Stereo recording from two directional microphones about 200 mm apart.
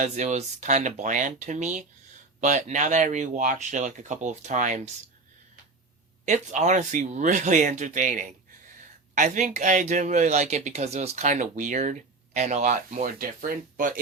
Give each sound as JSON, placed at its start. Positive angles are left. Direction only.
{"t": 0.0, "sound": "speech", "side_deg": -35}
{"t": 6.2, "sound": "speech", "side_deg": -35}